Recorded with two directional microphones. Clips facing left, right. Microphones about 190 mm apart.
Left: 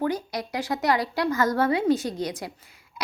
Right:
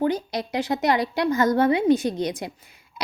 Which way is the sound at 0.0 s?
25° right (ahead or behind).